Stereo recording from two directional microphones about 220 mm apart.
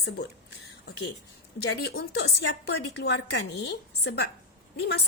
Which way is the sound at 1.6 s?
50° left (ahead or behind).